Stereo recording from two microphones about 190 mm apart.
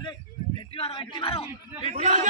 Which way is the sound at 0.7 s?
30° left (ahead or behind).